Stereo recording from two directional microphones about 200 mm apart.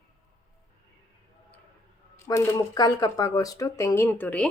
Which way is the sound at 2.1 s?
15° left (ahead or behind).